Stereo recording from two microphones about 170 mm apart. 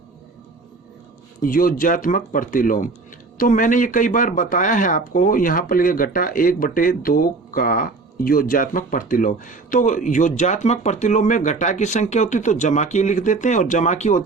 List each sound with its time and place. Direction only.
1.4 s speech: 55° left (ahead or behind)